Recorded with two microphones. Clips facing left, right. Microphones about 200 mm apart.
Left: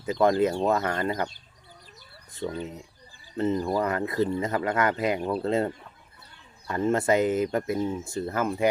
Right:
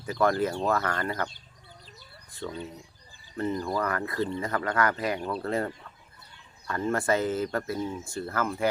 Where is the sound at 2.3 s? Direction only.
15° left (ahead or behind).